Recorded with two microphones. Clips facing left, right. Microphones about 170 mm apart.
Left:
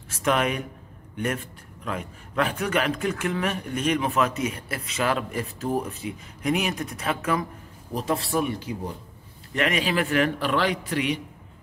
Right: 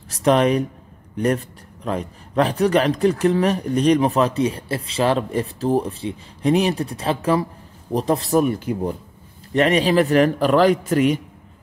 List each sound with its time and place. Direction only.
0.1 s speech: 35° right (ahead or behind); by 8.9 s 55° right (ahead or behind)
9.5 s speech: 35° right (ahead or behind)